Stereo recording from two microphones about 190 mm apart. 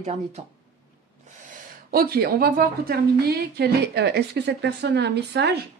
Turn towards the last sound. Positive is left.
turn(degrees=-65)  # may be behind; listen again after turning